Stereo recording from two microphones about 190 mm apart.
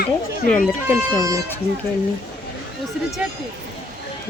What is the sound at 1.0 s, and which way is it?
Speech, 15° right (ahead or behind).